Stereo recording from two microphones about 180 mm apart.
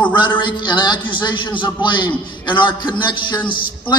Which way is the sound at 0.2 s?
25° left (ahead or behind).